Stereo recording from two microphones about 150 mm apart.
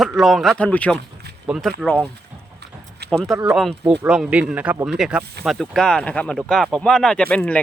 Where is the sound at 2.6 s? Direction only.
90° right.